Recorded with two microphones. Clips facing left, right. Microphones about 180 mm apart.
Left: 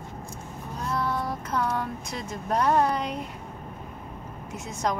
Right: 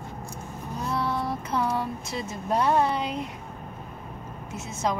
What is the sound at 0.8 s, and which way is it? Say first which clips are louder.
Child singing: even; 10° right (ahead or behind).